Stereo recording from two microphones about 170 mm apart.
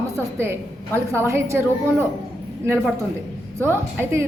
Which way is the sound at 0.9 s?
15° right (ahead or behind).